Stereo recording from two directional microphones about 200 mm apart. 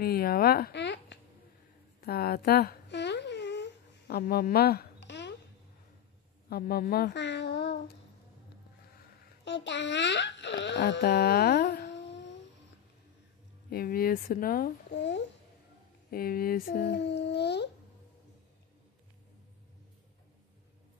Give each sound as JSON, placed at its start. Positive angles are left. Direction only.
{"t": 0.0, "sound": "speech", "side_deg": 50}
{"t": 2.0, "sound": "a sound", "side_deg": 50}
{"t": 6.5, "sound": "speech", "side_deg": 50}
{"t": 9.4, "sound": "a child's voice", "side_deg": 60}
{"t": 13.7, "sound": "speech", "side_deg": 50}
{"t": 16.1, "sound": "speech", "side_deg": 45}